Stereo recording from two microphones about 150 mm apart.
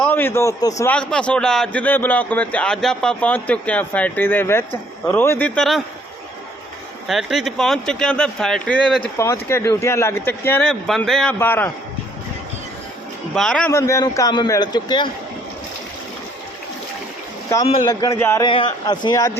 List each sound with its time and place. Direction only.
0.0 s a man's voice: 15° left (ahead or behind)
0.9 s a man's voice: 5° left (ahead or behind)
5.5 s speech: centre (ahead or behind)
7.1 s speech: centre (ahead or behind)
9.1 s a man's voice: 20° left (ahead or behind)
13.3 s speech: 5° left (ahead or behind)
13.7 s a man's voice: 20° left (ahead or behind)
17.8 s a man's voice: 20° left (ahead or behind)
18.4 s a man's voice: 30° left (ahead or behind)